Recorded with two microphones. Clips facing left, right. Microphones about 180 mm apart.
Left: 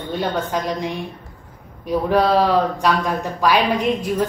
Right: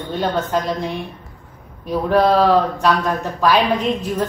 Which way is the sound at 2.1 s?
10° left (ahead or behind).